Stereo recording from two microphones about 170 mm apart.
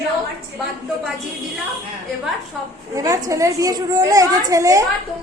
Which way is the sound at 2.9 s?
20° right (ahead or behind).